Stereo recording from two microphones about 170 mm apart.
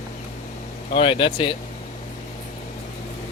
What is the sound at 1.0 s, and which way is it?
Speech, 30° left (ahead or behind).